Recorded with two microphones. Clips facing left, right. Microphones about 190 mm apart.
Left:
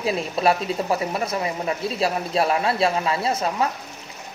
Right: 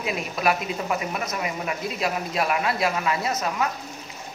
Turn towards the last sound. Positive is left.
turn(degrees=30)  # may be behind; listen again after turning